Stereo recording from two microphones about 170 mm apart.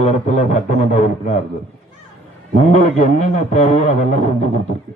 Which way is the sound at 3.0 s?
45° left (ahead or behind).